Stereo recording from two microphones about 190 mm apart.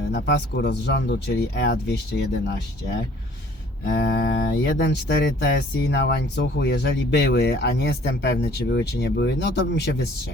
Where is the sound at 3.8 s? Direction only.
55° left (ahead or behind).